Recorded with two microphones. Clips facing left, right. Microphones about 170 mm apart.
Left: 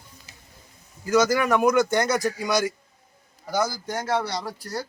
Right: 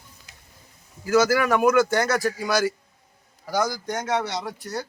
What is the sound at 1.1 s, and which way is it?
A man's voice, 5° right (ahead or behind).